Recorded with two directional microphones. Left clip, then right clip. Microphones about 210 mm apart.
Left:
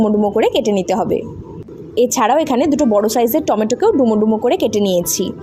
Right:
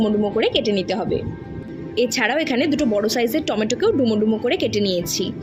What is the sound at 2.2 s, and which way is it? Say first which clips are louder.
A woman's voice: left 6 dB; 15° left (ahead or behind).